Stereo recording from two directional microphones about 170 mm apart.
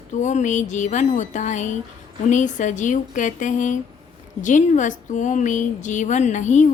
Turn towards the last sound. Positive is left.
turn(degrees=45)  # may be behind; listen again after turning